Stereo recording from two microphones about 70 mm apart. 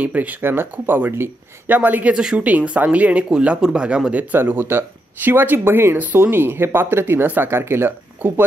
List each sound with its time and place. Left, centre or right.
0.0 s speech: right
0.4 s speech: right